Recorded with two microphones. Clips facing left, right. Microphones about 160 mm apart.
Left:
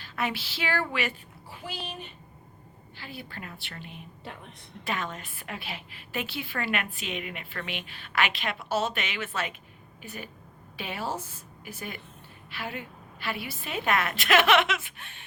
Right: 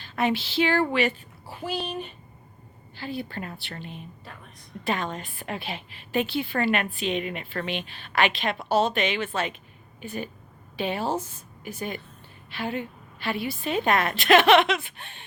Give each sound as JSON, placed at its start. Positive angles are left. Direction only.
{"t": 0.0, "sound": "a woman's voice", "side_deg": -25}
{"t": 3.0, "sound": "a woman's voice", "side_deg": -30}
{"t": 4.2, "sound": "a woman's voice", "side_deg": 20}
{"t": 4.9, "sound": "a woman's voice", "side_deg": -30}
{"t": 12.5, "sound": "a woman's voice", "side_deg": -25}